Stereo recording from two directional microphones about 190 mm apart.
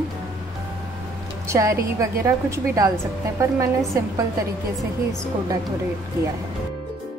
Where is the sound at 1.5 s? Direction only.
15° right (ahead or behind).